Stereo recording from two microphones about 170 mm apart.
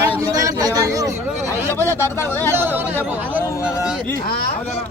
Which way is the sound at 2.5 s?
10° right (ahead or behind).